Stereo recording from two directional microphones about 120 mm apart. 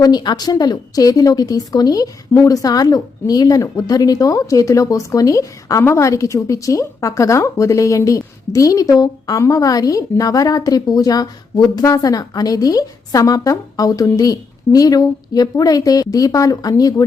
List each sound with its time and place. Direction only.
0.0 s a woman's voice: 35° left (ahead or behind)